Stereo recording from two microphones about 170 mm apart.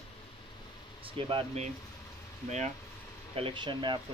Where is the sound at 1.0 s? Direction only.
30° right (ahead or behind).